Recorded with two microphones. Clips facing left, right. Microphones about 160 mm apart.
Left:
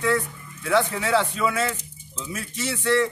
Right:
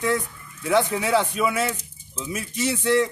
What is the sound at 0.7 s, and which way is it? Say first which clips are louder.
Speech: right 1 dB; 15° right (ahead or behind).